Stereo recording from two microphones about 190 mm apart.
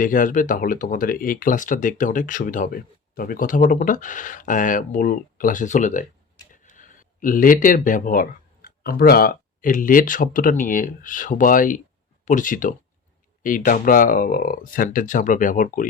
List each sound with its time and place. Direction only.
0.0 s speech: 45° left (ahead or behind)